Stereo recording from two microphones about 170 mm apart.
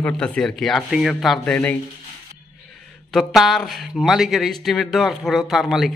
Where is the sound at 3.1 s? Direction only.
Centre (ahead or behind).